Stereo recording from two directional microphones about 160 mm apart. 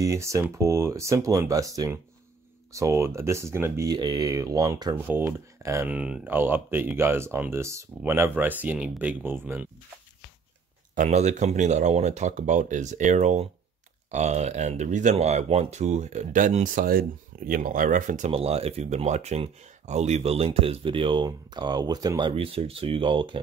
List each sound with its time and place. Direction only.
0.0 s speech: 20° right (ahead or behind)
2.7 s speech: 20° right (ahead or behind)
4.9 s speech: 15° right (ahead or behind)
11.0 s speech: 45° right (ahead or behind)
18.3 s speech: 40° right (ahead or behind)
22.3 s speech: 35° right (ahead or behind)